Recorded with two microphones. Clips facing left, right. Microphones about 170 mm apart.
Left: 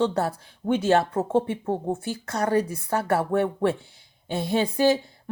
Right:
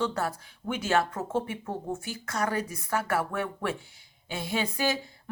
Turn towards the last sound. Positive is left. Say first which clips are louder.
# left 8 dB
turn(degrees=30)  # may be behind; listen again after turning